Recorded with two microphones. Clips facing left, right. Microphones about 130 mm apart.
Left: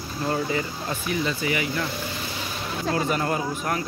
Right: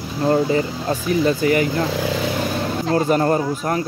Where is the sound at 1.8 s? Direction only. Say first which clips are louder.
Right 10 dB; 90° right.